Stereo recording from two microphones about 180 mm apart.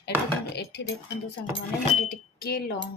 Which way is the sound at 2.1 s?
60° left (ahead or behind).